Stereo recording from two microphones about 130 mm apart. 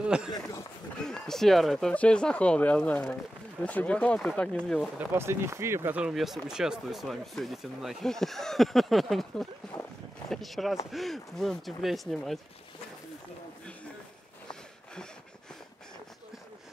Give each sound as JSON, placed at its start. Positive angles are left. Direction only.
{"t": 0.0, "sound": "speech", "side_deg": -5}
{"t": 0.3, "sound": "speech", "side_deg": 25}
{"t": 1.0, "sound": "speech", "side_deg": 5}
{"t": 4.9, "sound": "speech", "side_deg": -20}